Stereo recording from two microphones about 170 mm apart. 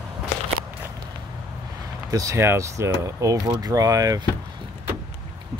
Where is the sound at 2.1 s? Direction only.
20° right (ahead or behind).